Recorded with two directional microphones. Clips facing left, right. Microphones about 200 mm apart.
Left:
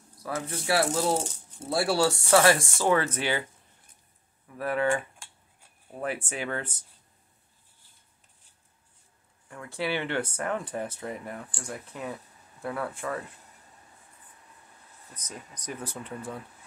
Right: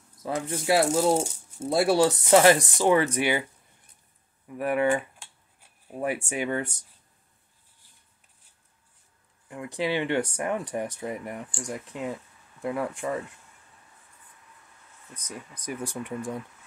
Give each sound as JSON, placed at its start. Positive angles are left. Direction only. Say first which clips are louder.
{"t": 0.2, "sound": "speech", "louder": "right 3 dB", "side_deg": -20}
{"t": 4.6, "sound": "speech", "louder": "right 3 dB", "side_deg": -15}
{"t": 9.5, "sound": "speech", "louder": "right 3 dB", "side_deg": -15}
{"t": 15.1, "sound": "speech", "louder": "right 3 dB", "side_deg": -10}